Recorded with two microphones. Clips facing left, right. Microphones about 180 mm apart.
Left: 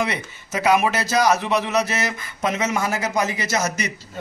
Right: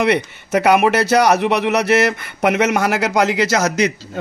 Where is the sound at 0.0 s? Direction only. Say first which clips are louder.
Right 9 dB; 65° right (ahead or behind).